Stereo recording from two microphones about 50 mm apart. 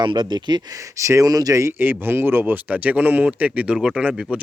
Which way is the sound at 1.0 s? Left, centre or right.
Right.